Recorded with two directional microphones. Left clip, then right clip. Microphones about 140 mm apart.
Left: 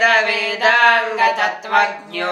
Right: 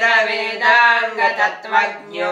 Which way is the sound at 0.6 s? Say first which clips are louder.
Right 1 dB; 65° left (ahead or behind).